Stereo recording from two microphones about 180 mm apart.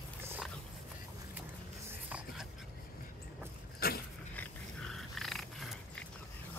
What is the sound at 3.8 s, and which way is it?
Dog, 55° left (ahead or behind).